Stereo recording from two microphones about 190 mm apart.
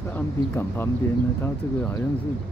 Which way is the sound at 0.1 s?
10° left (ahead or behind).